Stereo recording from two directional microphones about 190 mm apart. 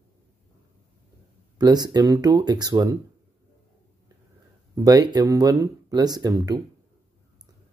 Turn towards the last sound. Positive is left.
turn(degrees=-20)  # may be behind; listen again after turning